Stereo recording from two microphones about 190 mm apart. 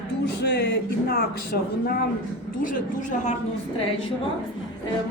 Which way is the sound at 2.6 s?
40° left (ahead or behind).